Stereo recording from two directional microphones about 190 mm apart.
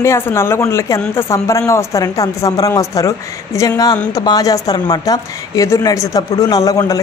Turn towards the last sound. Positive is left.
turn(degrees=20)  # may be behind; listen again after turning